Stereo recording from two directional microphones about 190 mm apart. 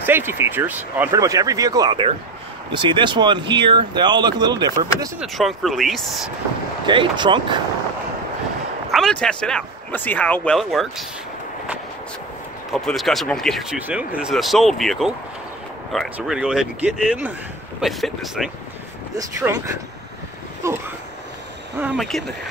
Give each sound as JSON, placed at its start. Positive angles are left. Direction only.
{"t": 0.0, "sound": "speech", "side_deg": -10}
{"t": 5.2, "sound": "speech", "side_deg": 0}
{"t": 6.9, "sound": "speech", "side_deg": -25}
{"t": 8.9, "sound": "speech", "side_deg": 5}
{"t": 12.7, "sound": "speech", "side_deg": 0}
{"t": 16.2, "sound": "speech", "side_deg": -5}
{"t": 19.1, "sound": "speech", "side_deg": -15}
{"t": 21.9, "sound": "speech", "side_deg": 0}